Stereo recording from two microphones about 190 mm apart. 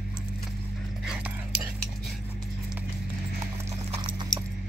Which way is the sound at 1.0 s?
10° right (ahead or behind).